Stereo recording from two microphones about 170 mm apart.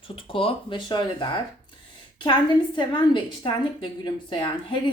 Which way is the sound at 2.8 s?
25° left (ahead or behind).